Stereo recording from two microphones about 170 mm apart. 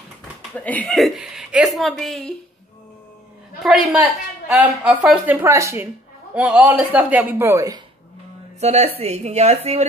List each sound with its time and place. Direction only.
0.6 s a woman's voice: 10° left (ahead or behind)
3.6 s a woman's voice: centre (ahead or behind); by 7.8 s 20° right (ahead or behind)
8.5 s a woman's voice: 40° right (ahead or behind)